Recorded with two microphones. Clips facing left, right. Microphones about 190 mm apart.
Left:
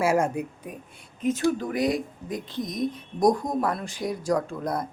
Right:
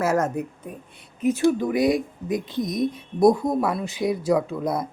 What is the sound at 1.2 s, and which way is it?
Speech, 10° right (ahead or behind).